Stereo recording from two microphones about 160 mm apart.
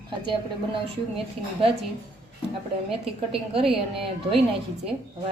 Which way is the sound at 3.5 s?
35° right (ahead or behind).